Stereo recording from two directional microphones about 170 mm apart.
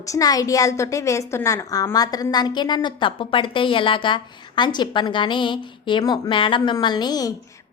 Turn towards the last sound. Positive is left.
turn(degrees=25)  # may be behind; listen again after turning